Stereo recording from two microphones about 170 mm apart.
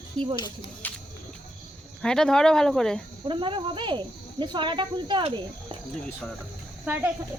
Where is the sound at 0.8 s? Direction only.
10° left (ahead or behind).